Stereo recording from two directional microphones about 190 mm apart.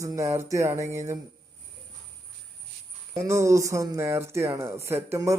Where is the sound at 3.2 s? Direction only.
15° right (ahead or behind).